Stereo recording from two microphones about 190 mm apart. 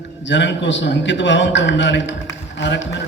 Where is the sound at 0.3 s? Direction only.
70° left (ahead or behind).